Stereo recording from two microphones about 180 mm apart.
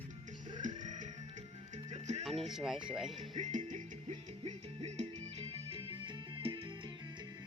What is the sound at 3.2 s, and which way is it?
Music, 40° right (ahead or behind).